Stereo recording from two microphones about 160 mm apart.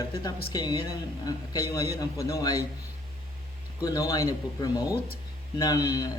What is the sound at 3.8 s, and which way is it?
A woman's voice, 20° left (ahead or behind).